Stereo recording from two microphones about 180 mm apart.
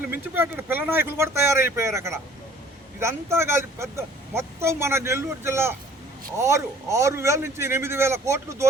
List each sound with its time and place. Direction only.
0.3 s speech: 10° right (ahead or behind)